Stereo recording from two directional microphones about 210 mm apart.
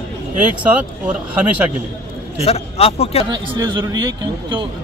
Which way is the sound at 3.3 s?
20° right (ahead or behind).